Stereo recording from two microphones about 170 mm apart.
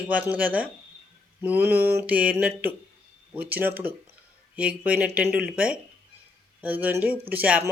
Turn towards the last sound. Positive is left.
turn(degrees=-10)  # may be behind; listen again after turning